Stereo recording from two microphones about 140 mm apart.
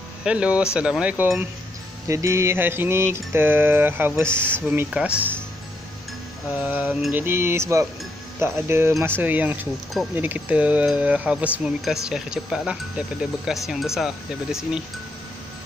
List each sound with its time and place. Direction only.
0.2 s speech: 5° right (ahead or behind)
2.0 s speech: 20° right (ahead or behind)
6.5 s speech: 10° right (ahead or behind)